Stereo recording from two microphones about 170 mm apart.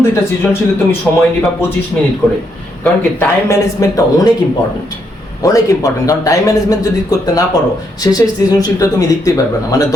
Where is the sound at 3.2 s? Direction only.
20° left (ahead or behind).